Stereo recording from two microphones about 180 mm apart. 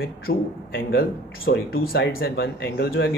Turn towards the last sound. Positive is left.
turn(degrees=65)  # may be behind; listen again after turning